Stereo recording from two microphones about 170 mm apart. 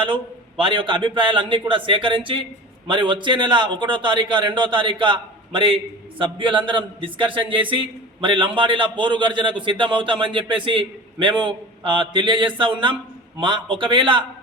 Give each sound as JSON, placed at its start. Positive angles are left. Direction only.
{"t": 0.0, "sound": "a man's voice", "side_deg": -30}